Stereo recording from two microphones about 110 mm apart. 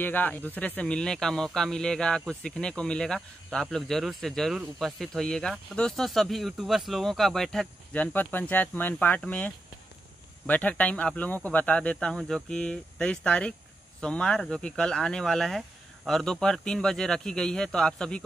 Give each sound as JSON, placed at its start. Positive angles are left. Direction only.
{"t": 0.0, "sound": "speech", "side_deg": 15}
{"t": 7.9, "sound": "speech", "side_deg": 15}